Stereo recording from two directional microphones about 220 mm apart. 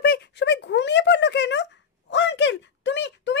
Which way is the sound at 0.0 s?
50° left (ahead or behind).